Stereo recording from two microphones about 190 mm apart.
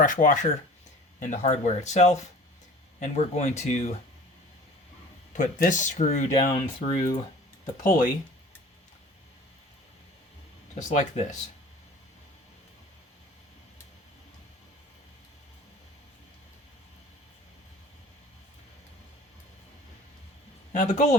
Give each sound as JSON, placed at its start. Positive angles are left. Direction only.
{"t": 0.0, "sound": "speech", "side_deg": 40}
{"t": 5.3, "sound": "speech", "side_deg": 40}
{"t": 6.3, "sound": "speech", "side_deg": 25}
{"t": 7.9, "sound": "speech", "side_deg": 45}
{"t": 10.8, "sound": "speech", "side_deg": 40}
{"t": 20.7, "sound": "speech", "side_deg": 40}